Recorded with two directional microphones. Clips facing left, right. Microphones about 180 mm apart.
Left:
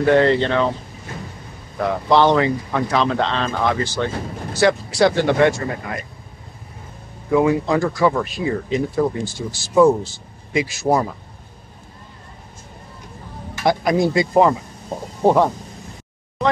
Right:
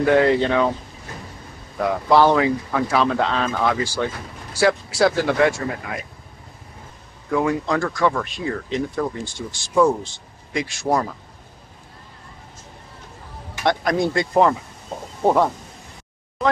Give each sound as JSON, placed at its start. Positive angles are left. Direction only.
{"t": 0.0, "sound": "speech", "side_deg": -5}
{"t": 1.8, "sound": "speech", "side_deg": -5}
{"t": 7.2, "sound": "speech", "side_deg": 5}
{"t": 13.7, "sound": "speech", "side_deg": 5}